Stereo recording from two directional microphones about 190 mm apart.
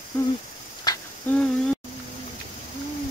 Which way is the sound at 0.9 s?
20° left (ahead or behind).